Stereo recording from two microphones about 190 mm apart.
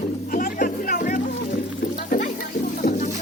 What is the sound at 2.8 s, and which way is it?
Music, 40° left (ahead or behind).